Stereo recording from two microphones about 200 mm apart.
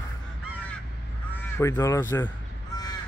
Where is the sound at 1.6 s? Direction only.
15° left (ahead or behind).